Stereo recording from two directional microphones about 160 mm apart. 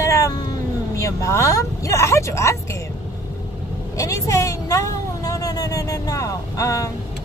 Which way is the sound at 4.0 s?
20° left (ahead or behind).